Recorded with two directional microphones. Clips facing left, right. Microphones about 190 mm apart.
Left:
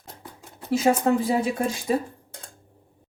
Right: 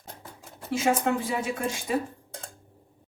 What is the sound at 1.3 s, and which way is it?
Speech, 35° left (ahead or behind).